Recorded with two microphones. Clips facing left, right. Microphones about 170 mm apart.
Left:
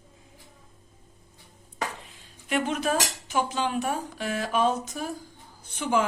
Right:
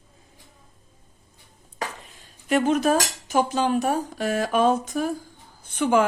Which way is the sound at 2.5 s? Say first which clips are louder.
Right 6 dB; 40° right (ahead or behind).